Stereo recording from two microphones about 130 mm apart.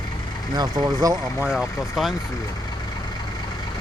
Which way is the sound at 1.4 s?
5° right (ahead or behind).